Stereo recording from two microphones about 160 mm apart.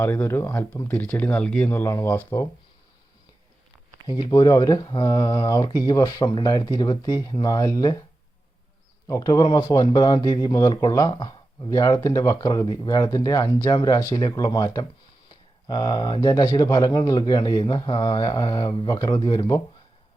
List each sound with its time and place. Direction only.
0.0 s speech: 15° left (ahead or behind)
4.0 s speech: 25° left (ahead or behind)
9.0 s speech: 20° left (ahead or behind)